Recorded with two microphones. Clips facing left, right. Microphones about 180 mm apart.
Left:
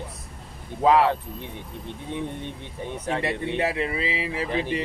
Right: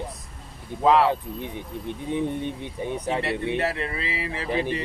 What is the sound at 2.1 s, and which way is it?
Speech, 15° right (ahead or behind).